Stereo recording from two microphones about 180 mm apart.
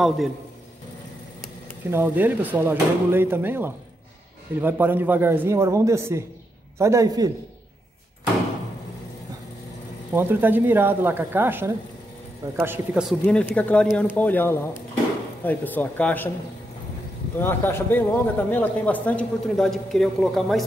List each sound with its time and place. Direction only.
1.9 s a man's voice: 10° right (ahead or behind)
10.1 s speech: 10° right (ahead or behind); by 16.3 s 10° left (ahead or behind)
17.4 s speech: 10° left (ahead or behind)